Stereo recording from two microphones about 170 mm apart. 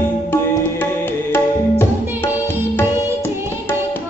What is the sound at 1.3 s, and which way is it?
Tabla, 15° left (ahead or behind).